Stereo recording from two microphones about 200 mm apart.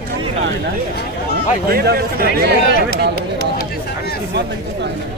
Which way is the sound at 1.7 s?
50° right (ahead or behind).